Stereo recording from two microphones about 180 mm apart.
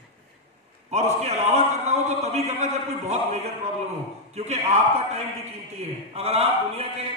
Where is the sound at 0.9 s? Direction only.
35° right (ahead or behind).